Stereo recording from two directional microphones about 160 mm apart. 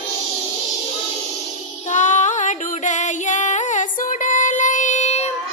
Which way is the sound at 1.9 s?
50° left (ahead or behind).